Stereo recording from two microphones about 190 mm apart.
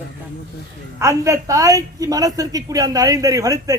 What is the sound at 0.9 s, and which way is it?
A woman's voice, 15° right (ahead or behind).